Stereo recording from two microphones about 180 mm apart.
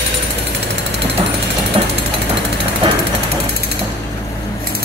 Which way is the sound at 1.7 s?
30° right (ahead or behind).